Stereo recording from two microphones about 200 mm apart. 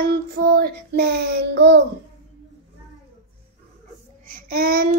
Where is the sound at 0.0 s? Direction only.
55° right (ahead or behind).